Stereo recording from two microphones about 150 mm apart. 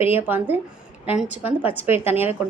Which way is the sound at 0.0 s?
15° right (ahead or behind).